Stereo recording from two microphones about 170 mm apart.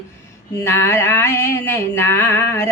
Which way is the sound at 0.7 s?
20° left (ahead or behind).